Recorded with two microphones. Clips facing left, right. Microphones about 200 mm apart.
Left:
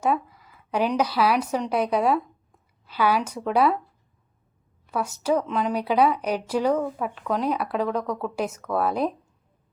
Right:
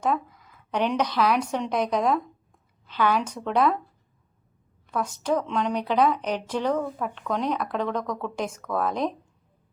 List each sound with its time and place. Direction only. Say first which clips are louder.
0.0 s a woman's voice: left 2 dB; 10° left (ahead or behind)
4.9 s speech: left 2 dB; 10° left (ahead or behind)